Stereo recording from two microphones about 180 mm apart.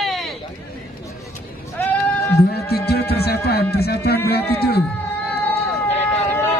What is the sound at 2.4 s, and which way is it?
Music, 60° left (ahead or behind).